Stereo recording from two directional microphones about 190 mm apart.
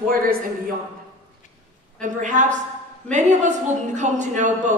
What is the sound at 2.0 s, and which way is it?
A woman's voice, 40° right (ahead or behind).